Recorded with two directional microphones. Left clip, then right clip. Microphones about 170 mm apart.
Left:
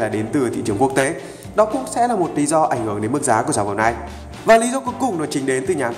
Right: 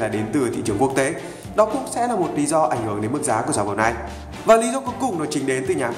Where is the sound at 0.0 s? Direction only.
15° left (ahead or behind).